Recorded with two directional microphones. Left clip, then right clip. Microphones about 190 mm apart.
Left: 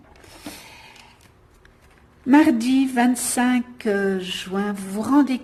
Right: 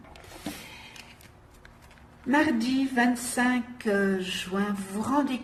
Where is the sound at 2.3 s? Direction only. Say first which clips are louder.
Left 8 dB; 50° left (ahead or behind).